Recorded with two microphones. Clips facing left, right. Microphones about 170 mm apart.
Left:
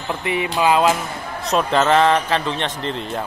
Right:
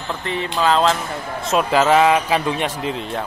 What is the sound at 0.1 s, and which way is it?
Speech, 10° left (ahead or behind).